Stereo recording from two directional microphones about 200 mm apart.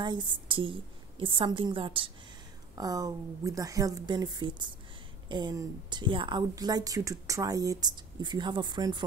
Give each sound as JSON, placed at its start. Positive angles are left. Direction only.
{"t": 0.0, "sound": "a woman's voice", "side_deg": -25}